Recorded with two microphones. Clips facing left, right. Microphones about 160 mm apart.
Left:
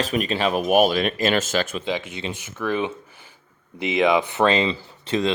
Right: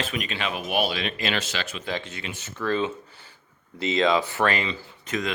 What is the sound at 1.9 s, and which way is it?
Speech, 15° left (ahead or behind).